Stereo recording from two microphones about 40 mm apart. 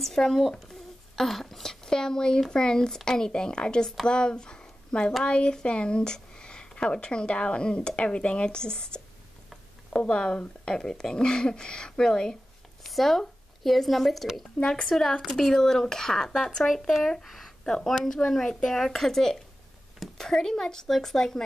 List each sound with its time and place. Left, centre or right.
0.0 s speech: centre
12.8 s speech: centre
17.8 s speech: centre